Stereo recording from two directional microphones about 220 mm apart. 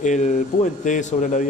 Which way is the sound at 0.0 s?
35° left (ahead or behind).